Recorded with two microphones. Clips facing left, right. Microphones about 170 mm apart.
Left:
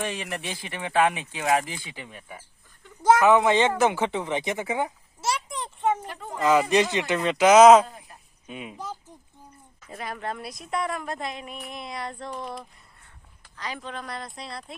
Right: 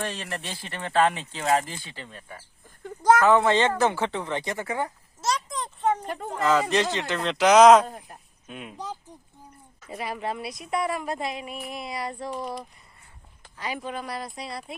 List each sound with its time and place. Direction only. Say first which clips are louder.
0.0 s speech: left 1 dB; 15° left (ahead or behind)
7.9 s a sound: right 5 dB; 55° right (ahead or behind)
8.4 s a woman's voice: left 2 dB; centre (ahead or behind)
9.9 s a woman's voice: right 2 dB; 5° right (ahead or behind)
13.6 s a woman's voice: right 3 dB; 10° right (ahead or behind)